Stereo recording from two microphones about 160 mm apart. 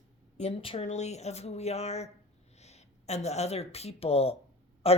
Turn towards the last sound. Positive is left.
turn(degrees=40)  # may be behind; listen again after turning